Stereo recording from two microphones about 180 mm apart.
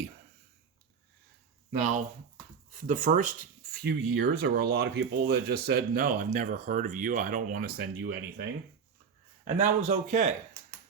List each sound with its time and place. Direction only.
2.7 s speech: 45° right (ahead or behind)
9.4 s speech: 45° right (ahead or behind)